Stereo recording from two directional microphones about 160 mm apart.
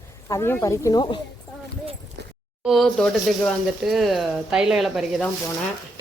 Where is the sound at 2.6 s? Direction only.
Centre (ahead or behind).